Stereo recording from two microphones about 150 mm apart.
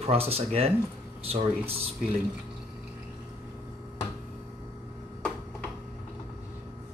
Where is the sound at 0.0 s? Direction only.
40° right (ahead or behind).